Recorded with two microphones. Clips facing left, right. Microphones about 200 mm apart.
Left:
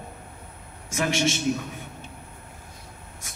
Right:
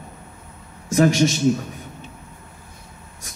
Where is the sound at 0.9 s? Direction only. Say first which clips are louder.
Right 8 dB; 40° right (ahead or behind).